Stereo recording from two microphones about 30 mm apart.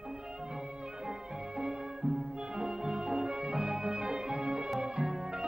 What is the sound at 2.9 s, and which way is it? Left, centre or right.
Music, right.